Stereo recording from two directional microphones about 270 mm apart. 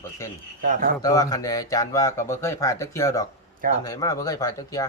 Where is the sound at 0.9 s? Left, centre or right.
Centre.